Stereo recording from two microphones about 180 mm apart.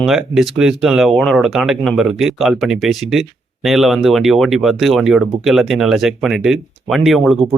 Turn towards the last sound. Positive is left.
turn(degrees=0)  # may be behind; listen again after turning